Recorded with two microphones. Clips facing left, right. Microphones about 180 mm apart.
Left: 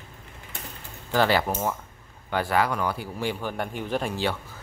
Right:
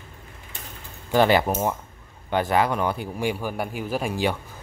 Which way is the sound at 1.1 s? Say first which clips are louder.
Right 4 dB; 20° right (ahead or behind).